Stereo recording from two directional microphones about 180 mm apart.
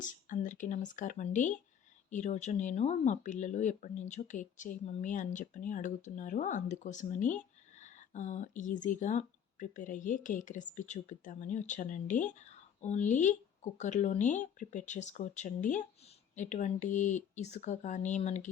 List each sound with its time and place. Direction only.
0.0 s speech: 45° left (ahead or behind)